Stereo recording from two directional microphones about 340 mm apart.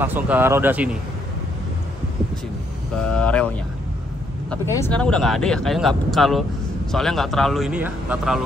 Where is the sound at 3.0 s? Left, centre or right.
Centre.